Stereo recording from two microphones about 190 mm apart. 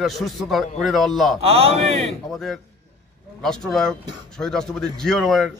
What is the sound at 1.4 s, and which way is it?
Speech, 30° right (ahead or behind).